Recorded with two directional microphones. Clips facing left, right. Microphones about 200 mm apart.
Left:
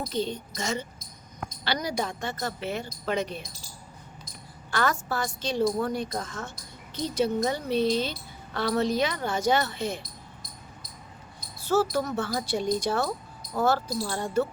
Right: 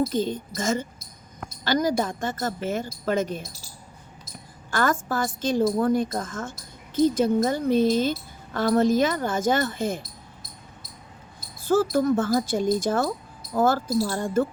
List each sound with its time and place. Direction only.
0.1 s a woman's voice: 45° right (ahead or behind)
4.7 s a woman's voice: 45° right (ahead or behind)
11.7 s a woman's voice: 50° right (ahead or behind)